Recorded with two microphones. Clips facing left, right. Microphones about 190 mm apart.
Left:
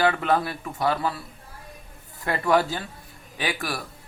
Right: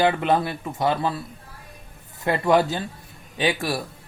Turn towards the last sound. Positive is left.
turn(degrees=-25)  # may be behind; listen again after turning